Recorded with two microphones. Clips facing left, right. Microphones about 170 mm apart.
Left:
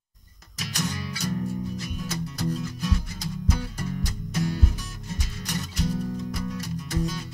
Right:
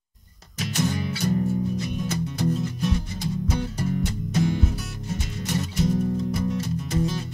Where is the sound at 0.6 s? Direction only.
25° right (ahead or behind).